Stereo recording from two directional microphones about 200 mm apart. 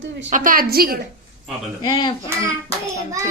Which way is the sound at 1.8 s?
20° left (ahead or behind).